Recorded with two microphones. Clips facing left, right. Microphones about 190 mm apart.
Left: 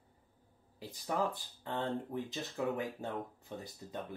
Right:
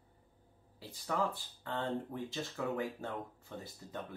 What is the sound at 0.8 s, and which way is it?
Speech, 20° left (ahead or behind).